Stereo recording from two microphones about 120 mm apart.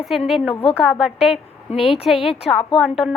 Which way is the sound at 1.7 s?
55° left (ahead or behind).